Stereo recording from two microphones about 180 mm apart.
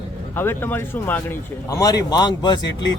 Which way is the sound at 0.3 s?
10° left (ahead or behind).